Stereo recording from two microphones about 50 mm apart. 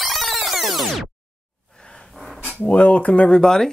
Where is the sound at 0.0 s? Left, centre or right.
Centre.